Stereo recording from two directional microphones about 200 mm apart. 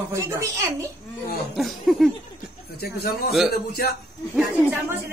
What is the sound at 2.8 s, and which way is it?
Speech, 50° left (ahead or behind).